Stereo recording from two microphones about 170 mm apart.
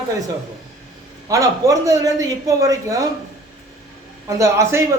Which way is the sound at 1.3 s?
20° right (ahead or behind).